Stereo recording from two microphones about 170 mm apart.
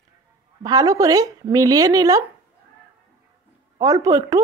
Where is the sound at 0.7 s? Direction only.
20° right (ahead or behind).